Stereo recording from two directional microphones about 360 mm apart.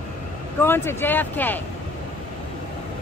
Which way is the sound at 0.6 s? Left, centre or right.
Centre.